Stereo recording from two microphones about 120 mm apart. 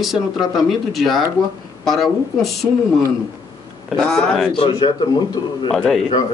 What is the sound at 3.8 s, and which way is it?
Speech, 5° left (ahead or behind).